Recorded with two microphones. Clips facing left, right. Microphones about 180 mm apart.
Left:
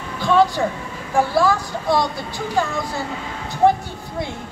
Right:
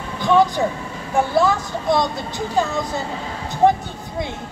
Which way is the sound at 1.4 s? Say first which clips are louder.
Even; 20° right (ahead or behind).